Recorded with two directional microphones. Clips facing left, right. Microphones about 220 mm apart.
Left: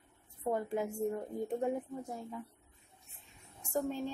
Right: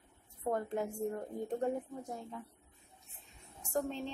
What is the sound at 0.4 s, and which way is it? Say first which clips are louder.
Speech: left 1 dB; 10° left (ahead or behind).